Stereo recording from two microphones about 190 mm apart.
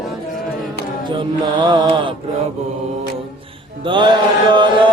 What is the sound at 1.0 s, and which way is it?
Mantra, 25° right (ahead or behind).